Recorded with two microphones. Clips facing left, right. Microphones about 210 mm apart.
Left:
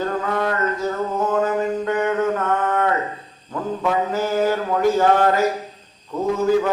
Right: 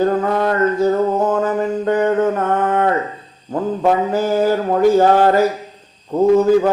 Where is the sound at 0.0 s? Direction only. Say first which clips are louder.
Right 6 dB; 35° right (ahead or behind).